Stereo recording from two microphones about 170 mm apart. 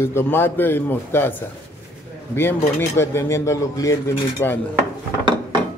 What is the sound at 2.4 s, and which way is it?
Speech, 15° left (ahead or behind).